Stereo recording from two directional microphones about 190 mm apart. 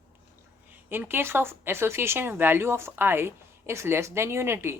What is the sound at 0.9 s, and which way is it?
Speech, 10° right (ahead or behind).